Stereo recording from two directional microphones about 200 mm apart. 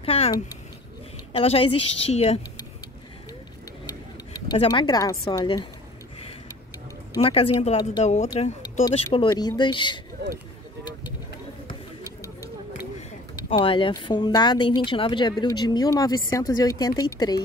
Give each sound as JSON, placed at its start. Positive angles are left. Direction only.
{"t": 0.0, "sound": "speech", "side_deg": 30}
{"t": 1.3, "sound": "speech", "side_deg": 30}
{"t": 4.5, "sound": "speech", "side_deg": 25}
{"t": 7.2, "sound": "speech", "side_deg": 30}
{"t": 13.4, "sound": "speech", "side_deg": 25}